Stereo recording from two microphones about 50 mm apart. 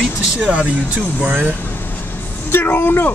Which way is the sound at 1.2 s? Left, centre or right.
Right.